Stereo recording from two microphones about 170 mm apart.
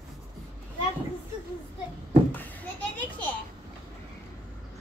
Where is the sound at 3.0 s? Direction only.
10° left (ahead or behind).